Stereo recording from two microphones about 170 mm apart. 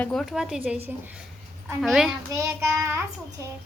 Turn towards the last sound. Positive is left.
turn(degrees=-15)  # may be behind; listen again after turning